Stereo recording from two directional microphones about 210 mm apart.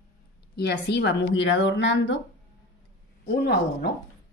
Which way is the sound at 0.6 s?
55° left (ahead or behind).